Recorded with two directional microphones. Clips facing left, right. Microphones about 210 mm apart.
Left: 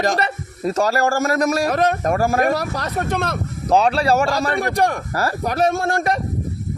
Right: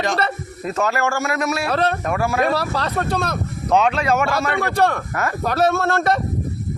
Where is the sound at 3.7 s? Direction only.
35° left (ahead or behind).